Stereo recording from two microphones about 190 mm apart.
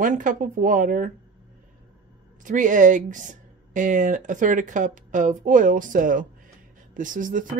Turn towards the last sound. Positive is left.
turn(degrees=-45)  # may be behind; listen again after turning